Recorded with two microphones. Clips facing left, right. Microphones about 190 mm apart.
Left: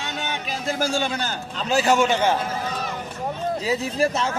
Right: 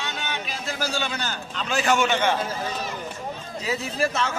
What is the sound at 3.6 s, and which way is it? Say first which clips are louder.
Speech: left 2 dB; 35° left (ahead or behind).